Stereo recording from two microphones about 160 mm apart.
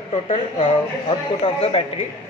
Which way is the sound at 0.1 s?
35° left (ahead or behind).